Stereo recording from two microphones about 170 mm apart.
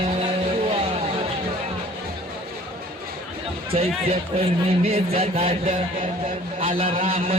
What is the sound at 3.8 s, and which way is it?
A man's voice, 35° right (ahead or behind).